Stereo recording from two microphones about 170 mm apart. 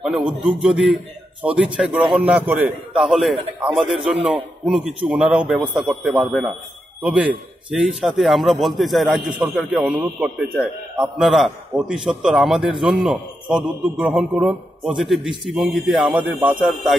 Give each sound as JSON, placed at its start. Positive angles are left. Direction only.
{"t": 0.0, "sound": "a man's voice", "side_deg": -5}